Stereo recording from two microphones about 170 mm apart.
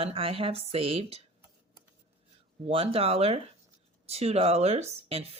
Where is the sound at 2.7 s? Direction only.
35° right (ahead or behind).